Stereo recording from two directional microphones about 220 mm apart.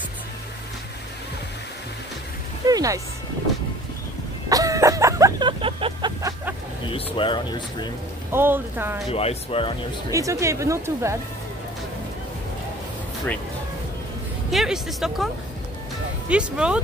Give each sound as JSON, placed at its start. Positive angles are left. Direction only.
{"t": 2.6, "sound": "music", "side_deg": -15}
{"t": 4.5, "sound": "a sound", "side_deg": -15}
{"t": 6.9, "sound": "speech", "side_deg": 25}
{"t": 8.3, "sound": "speech", "side_deg": -10}
{"t": 9.1, "sound": "speech", "side_deg": 25}
{"t": 10.1, "sound": "speech", "side_deg": -15}
{"t": 14.5, "sound": "speech", "side_deg": 0}
{"t": 16.3, "sound": "speech", "side_deg": -5}